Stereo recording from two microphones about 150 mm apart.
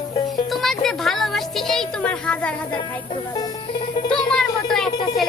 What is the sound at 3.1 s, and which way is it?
Music, 30° left (ahead or behind).